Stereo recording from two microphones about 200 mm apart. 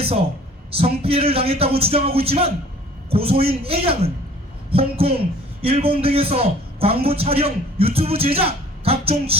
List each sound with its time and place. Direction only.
0.7 s a man's voice: 30° right (ahead or behind)